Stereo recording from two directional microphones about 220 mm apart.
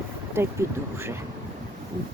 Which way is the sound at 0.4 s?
10° right (ahead or behind).